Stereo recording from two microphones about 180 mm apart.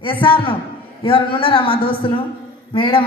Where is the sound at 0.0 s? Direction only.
30° left (ahead or behind).